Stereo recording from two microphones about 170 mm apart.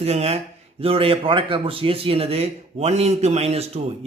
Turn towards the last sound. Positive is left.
turn(degrees=-40)  # may be behind; listen again after turning